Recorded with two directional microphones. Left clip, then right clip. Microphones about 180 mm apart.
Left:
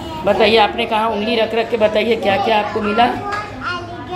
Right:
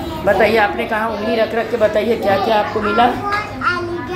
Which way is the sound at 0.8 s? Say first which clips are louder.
Left 2 dB; 20° left (ahead or behind).